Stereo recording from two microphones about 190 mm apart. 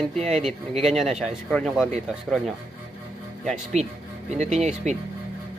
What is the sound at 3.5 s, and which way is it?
Speech, 35° right (ahead or behind).